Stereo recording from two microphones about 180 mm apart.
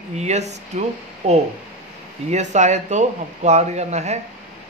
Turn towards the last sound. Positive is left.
turn(degrees=-40)  # may be behind; listen again after turning